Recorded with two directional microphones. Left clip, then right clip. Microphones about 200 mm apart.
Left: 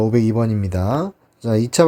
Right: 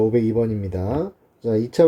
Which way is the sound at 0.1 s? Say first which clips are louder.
Left 1 dB; 40° left (ahead or behind).